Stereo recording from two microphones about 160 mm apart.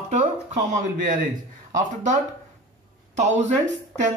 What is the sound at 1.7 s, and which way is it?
Speech, 55° right (ahead or behind).